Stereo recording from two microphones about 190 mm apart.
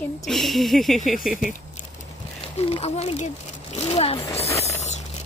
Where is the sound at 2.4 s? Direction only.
30° left (ahead or behind).